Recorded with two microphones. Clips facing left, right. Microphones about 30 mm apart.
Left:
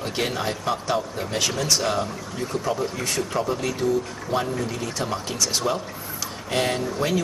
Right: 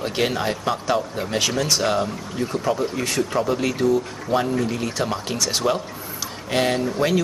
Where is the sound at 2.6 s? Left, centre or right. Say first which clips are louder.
Right 3 dB; centre.